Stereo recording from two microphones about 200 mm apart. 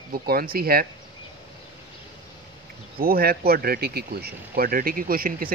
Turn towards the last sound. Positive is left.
turn(degrees=-45)  # may be behind; listen again after turning